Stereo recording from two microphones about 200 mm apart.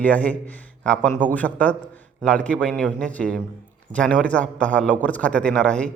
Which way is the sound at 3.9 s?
5° left (ahead or behind).